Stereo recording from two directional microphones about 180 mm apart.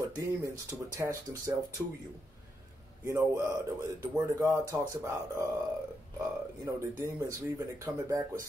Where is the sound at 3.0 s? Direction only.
15° right (ahead or behind).